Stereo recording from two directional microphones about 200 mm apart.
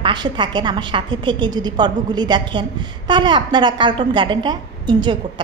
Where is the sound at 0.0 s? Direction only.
25° right (ahead or behind).